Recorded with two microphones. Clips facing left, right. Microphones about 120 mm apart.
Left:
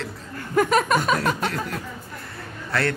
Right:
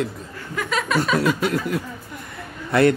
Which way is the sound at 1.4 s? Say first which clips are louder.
Right 5 dB; 10° right (ahead or behind).